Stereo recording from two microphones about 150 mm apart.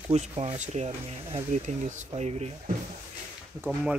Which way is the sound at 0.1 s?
45° right (ahead or behind).